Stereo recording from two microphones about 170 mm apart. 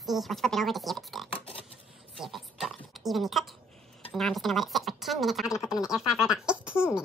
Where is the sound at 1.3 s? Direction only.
35° left (ahead or behind).